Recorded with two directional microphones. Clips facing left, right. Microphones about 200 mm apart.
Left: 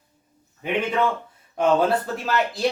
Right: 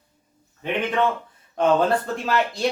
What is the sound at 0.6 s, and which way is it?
A man's voice, 10° left (ahead or behind).